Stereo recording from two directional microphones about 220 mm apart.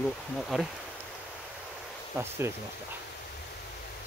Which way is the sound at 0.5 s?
Centre (ahead or behind).